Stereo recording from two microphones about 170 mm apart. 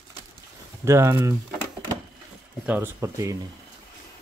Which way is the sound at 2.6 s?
10° right (ahead or behind).